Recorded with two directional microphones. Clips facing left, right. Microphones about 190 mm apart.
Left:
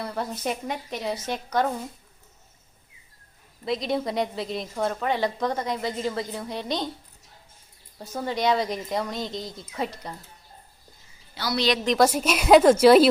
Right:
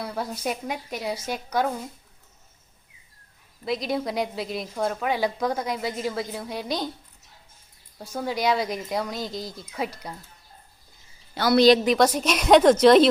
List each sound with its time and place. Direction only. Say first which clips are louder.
0.0 s speech: even; 5° right (ahead or behind)
3.6 s speech: even; centre (ahead or behind)
7.9 s speech: even; centre (ahead or behind)
11.3 s a woman's voice: right 9 dB; 50° right (ahead or behind)
11.9 s a woman's voice: even; 5° left (ahead or behind)